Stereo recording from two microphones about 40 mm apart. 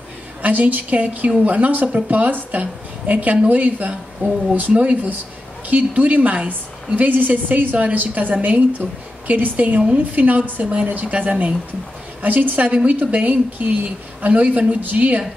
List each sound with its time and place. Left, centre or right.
0.4 s a woman's voice: right